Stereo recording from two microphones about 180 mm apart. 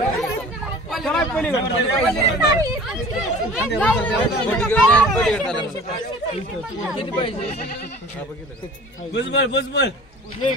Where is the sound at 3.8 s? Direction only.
10° left (ahead or behind).